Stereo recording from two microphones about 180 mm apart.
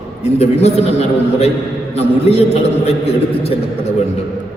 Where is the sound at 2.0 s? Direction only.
35° left (ahead or behind).